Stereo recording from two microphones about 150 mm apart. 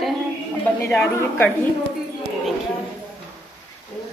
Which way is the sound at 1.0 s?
15° left (ahead or behind).